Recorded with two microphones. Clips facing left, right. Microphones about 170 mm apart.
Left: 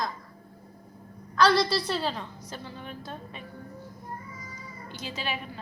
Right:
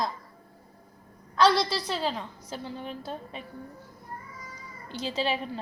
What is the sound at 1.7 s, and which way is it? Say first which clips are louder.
Speech: left 1 dB; 15° right (ahead or behind).